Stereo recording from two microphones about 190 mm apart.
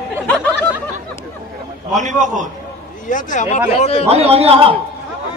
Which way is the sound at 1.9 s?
40° right (ahead or behind).